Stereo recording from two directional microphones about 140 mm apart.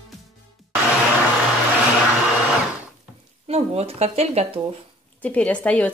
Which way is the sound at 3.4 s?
45° right (ahead or behind).